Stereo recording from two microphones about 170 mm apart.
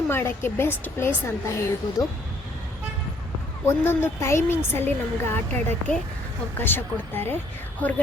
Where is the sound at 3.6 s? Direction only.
15° left (ahead or behind).